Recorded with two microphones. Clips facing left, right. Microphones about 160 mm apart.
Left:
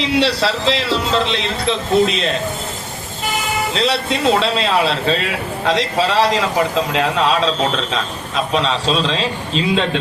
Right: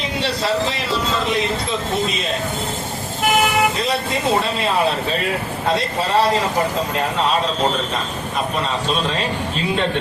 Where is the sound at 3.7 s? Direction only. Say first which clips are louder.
Left 3 dB; 75° left (ahead or behind).